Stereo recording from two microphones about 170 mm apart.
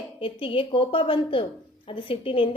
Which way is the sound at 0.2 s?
30° left (ahead or behind).